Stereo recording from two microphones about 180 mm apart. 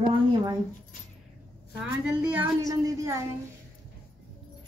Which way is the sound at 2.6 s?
20° right (ahead or behind).